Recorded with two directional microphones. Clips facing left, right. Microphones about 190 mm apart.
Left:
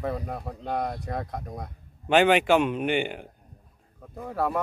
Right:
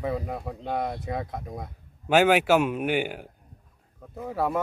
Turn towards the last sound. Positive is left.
turn(degrees=0)  # may be behind; listen again after turning